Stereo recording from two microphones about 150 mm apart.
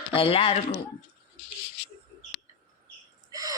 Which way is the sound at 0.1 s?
35° left (ahead or behind).